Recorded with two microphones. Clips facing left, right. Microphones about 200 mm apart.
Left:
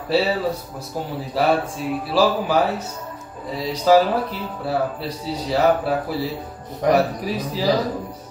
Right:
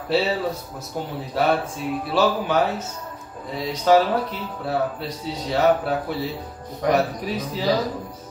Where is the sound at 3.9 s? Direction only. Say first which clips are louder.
Left 2 dB; centre (ahead or behind).